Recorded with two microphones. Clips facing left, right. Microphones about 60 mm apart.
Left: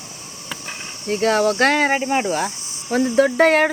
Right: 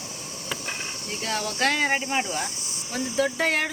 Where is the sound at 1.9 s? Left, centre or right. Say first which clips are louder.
Left 6 dB; left.